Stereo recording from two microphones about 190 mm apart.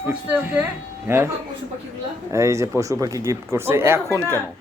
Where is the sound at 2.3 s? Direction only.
15° right (ahead or behind).